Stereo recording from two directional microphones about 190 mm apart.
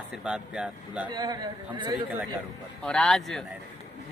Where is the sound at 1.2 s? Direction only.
20° right (ahead or behind).